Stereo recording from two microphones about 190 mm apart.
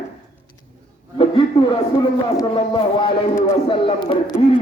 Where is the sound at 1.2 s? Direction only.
25° left (ahead or behind).